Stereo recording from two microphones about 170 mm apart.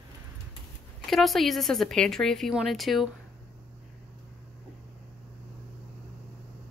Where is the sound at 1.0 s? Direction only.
Centre (ahead or behind).